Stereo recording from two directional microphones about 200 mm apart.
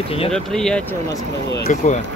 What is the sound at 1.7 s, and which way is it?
Speech, 40° left (ahead or behind).